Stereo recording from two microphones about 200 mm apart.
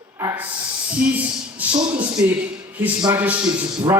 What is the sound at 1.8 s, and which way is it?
A man's voice, 5° right (ahead or behind).